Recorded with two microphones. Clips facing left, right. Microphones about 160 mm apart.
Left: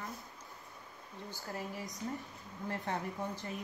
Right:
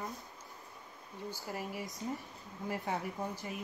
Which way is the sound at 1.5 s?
10° right (ahead or behind).